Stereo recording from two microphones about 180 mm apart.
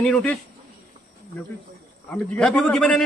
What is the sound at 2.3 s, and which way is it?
Speech, 5° left (ahead or behind).